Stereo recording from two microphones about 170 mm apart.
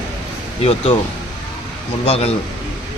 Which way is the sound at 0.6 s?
35° left (ahead or behind).